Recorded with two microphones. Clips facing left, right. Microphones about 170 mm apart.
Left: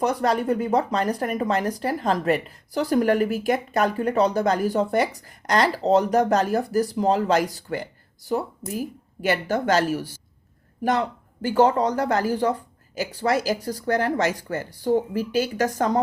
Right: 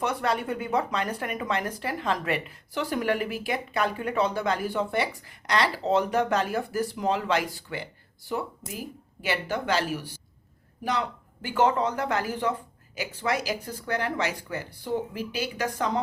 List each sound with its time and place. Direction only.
0.0 s a woman's voice: 40° left (ahead or behind)
11.4 s speech: 40° left (ahead or behind)